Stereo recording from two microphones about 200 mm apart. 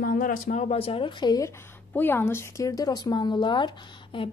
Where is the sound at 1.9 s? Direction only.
10° left (ahead or behind).